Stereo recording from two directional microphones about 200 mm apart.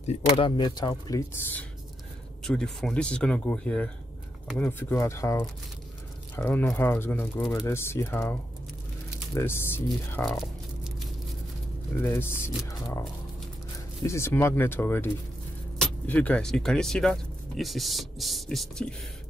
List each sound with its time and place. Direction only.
0.0 s speech: 30° left (ahead or behind); by 1.7 s 15° left (ahead or behind)
2.4 s speech: centre (ahead or behind)
12.0 s speech: 10° left (ahead or behind)
14.0 s speech: 15° left (ahead or behind)